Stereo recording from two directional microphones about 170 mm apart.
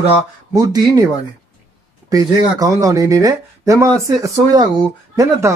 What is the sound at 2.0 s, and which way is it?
Speech, 20° right (ahead or behind).